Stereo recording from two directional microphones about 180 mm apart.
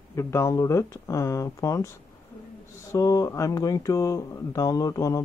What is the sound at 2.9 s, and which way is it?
Speech, 20° left (ahead or behind).